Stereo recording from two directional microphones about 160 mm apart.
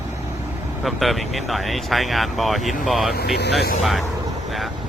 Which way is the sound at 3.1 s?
85° left.